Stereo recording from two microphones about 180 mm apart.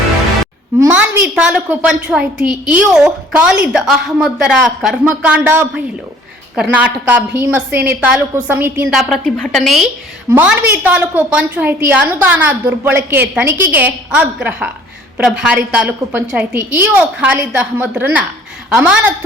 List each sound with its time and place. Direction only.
0.8 s a woman's voice: 10° right (ahead or behind)